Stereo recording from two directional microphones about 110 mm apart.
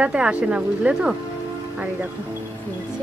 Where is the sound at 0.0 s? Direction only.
10° right (ahead or behind).